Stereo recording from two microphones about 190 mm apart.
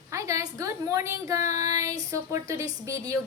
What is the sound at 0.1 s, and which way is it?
A woman's voice, 15° right (ahead or behind).